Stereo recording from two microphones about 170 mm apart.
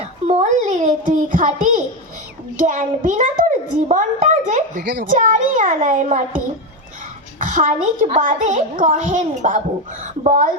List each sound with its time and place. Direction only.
0.3 s a sound: 45° right (ahead or behind)
2.6 s a child's voice: 50° right (ahead or behind)
4.8 s a child's voice: 90° right
5.0 s a child's voice: 50° right (ahead or behind)